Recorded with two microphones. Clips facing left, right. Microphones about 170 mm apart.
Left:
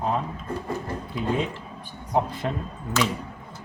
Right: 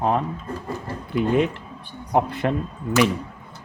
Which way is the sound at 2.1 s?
65° right (ahead or behind).